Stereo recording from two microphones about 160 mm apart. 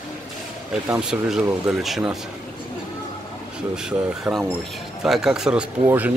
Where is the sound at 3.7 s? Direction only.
5° right (ahead or behind).